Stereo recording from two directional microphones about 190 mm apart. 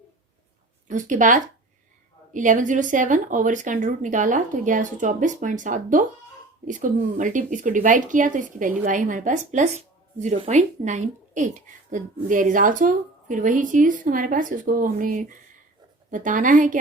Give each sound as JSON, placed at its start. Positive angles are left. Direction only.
{"t": 0.9, "sound": "speech", "side_deg": -40}